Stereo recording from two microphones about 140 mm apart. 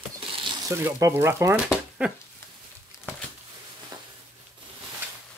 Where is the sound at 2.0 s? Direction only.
10° right (ahead or behind).